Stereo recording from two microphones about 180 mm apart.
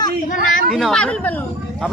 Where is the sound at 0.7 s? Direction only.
Centre (ahead or behind).